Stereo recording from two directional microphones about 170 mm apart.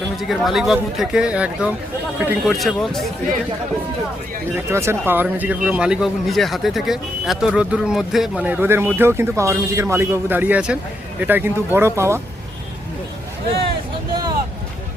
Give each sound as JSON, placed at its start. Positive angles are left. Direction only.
{"t": 0.2, "sound": "speech", "side_deg": 0}
{"t": 4.5, "sound": "speech", "side_deg": -15}
{"t": 14.1, "sound": "boat", "side_deg": -25}